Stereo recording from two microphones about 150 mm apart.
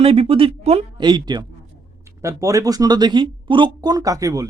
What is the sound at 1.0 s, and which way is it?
Speech, 30° right (ahead or behind).